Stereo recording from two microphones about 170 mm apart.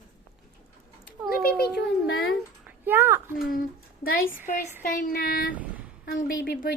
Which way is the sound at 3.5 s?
55° left (ahead or behind).